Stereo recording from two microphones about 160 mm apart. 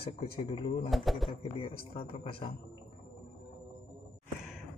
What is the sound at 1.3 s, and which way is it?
Speech, 35° left (ahead or behind).